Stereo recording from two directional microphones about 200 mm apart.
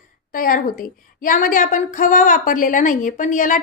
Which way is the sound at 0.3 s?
45° left (ahead or behind).